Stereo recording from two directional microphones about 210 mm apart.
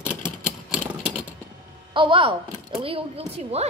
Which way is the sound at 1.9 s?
25° right (ahead or behind).